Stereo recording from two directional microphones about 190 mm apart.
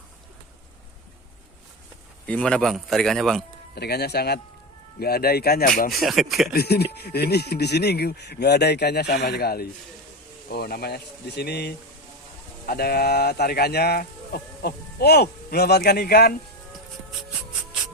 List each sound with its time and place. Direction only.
2.2 s speech: 5° left (ahead or behind)
3.8 s speech: 60° left (ahead or behind)
5.9 s speech: centre (ahead or behind)
6.5 s speech: 55° left (ahead or behind)